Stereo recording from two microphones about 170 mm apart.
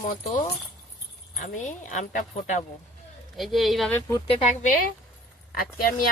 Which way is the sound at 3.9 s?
20° left (ahead or behind).